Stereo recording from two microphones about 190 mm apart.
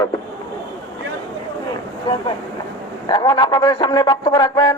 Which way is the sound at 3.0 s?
20° left (ahead or behind).